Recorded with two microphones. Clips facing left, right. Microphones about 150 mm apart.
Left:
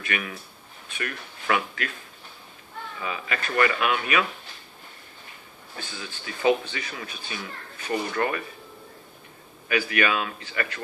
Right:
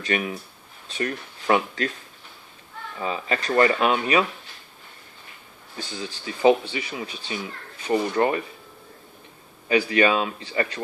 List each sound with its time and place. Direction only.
0.0 s speech: 30° right (ahead or behind)
3.0 s speech: 35° right (ahead or behind)
5.9 s speech: 30° right (ahead or behind)
9.7 s speech: 25° right (ahead or behind)